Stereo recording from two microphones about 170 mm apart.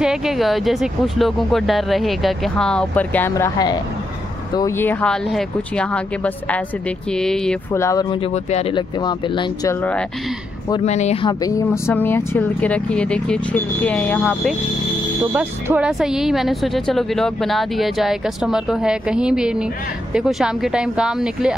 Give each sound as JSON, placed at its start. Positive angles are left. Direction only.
{"t": 0.0, "sound": "speech", "side_deg": -5}
{"t": 7.7, "sound": "speech", "side_deg": 20}
{"t": 8.5, "sound": "speech", "side_deg": 35}
{"t": 10.9, "sound": "speech", "side_deg": 40}
{"t": 11.2, "sound": "speech", "side_deg": 20}
{"t": 15.3, "sound": "speech", "side_deg": -5}